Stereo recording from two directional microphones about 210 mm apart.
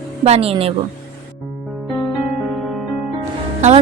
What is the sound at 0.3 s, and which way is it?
Speech, 30° right (ahead or behind).